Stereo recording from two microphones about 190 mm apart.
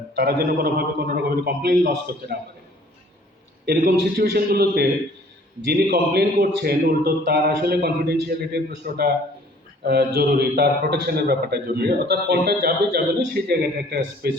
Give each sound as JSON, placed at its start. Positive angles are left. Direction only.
{"t": 0.2, "sound": "a man's voice", "side_deg": -55}
{"t": 3.7, "sound": "a man's voice", "side_deg": -55}